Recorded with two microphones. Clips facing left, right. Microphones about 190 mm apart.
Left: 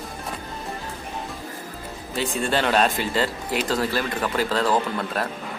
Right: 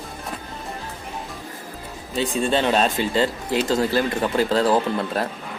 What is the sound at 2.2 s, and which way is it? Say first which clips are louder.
Speech: right 3 dB; 20° right (ahead or behind).